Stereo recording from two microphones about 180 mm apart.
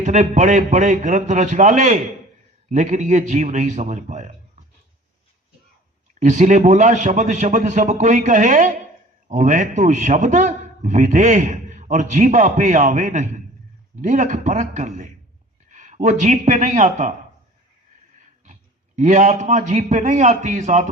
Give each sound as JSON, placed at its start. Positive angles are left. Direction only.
{"t": 0.0, "sound": "a man's voice", "side_deg": -40}
{"t": 6.1, "sound": "a man's voice", "side_deg": -40}
{"t": 18.9, "sound": "a man's voice", "side_deg": -40}